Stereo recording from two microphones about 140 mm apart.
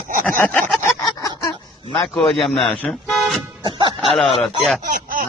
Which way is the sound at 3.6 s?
35° right (ahead or behind).